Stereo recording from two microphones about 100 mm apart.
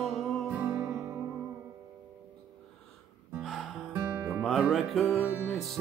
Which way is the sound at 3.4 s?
Centre (ahead or behind).